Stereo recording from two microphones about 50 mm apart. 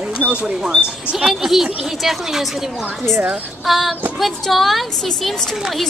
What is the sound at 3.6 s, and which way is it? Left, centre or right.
Child singing, centre.